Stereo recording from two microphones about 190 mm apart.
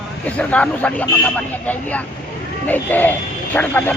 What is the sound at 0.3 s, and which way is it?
Speech, 5° left (ahead or behind).